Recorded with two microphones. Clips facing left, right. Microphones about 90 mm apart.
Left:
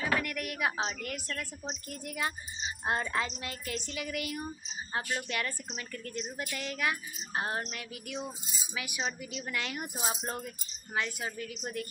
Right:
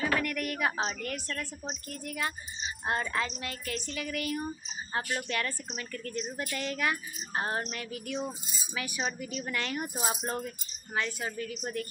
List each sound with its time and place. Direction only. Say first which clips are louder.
0.0 s a sound: right 2 dB; 10° left (ahead or behind)
2.0 s speech: even; 20° left (ahead or behind)
6.3 s speech: right 3 dB; 5° left (ahead or behind)
11.0 s speech: right 2 dB; 10° left (ahead or behind)